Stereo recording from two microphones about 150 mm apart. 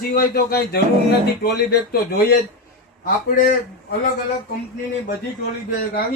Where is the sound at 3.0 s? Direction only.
75° left (ahead or behind).